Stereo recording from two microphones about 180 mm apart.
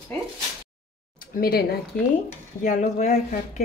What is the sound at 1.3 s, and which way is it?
Speech, 55° left (ahead or behind).